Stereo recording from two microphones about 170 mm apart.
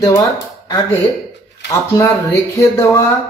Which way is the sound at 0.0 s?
20° left (ahead or behind).